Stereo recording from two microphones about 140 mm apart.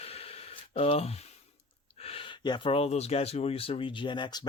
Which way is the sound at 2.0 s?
45° left (ahead or behind).